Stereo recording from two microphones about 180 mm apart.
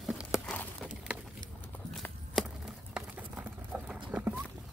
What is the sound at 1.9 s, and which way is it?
Clip-clop, centre (ahead or behind).